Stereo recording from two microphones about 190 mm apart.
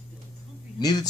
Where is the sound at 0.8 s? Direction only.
20° left (ahead or behind).